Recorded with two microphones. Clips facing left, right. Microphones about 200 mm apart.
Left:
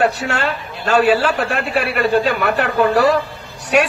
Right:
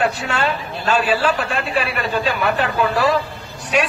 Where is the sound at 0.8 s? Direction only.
70° left (ahead or behind).